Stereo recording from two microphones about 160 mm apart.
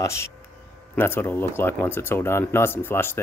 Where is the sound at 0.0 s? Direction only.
15° left (ahead or behind).